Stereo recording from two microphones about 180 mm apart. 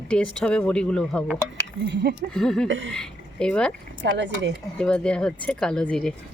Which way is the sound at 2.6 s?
90° right.